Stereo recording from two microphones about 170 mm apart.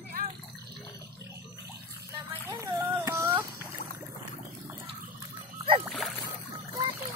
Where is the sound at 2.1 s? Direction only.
15° right (ahead or behind).